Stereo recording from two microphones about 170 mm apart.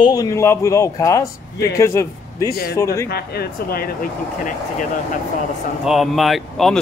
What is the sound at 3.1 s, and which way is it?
Speech, 65° left (ahead or behind).